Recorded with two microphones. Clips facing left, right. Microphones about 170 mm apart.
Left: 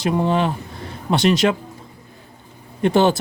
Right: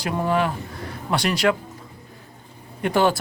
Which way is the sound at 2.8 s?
25° left (ahead or behind).